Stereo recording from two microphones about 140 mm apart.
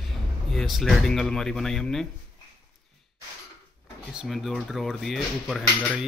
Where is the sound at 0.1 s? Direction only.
Centre (ahead or behind).